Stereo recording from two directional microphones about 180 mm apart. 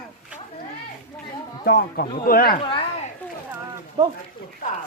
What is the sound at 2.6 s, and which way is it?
Speech, 30° left (ahead or behind).